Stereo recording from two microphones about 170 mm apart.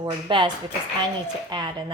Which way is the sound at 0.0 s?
25° right (ahead or behind).